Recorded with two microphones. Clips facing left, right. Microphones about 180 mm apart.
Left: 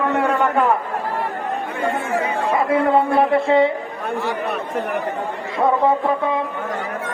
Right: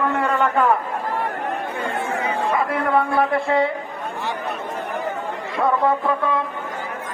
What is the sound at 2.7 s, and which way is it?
A man's voice, 25° left (ahead or behind).